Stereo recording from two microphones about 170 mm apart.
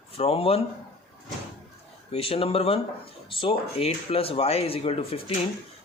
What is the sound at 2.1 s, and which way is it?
Speech, 35° left (ahead or behind).